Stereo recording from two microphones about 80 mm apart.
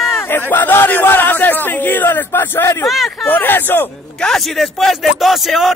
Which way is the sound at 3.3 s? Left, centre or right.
Left.